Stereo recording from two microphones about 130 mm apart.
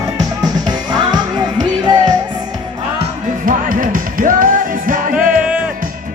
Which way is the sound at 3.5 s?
90° right.